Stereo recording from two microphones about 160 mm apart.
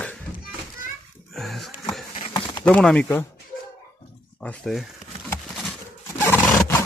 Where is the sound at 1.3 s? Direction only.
Centre (ahead or behind).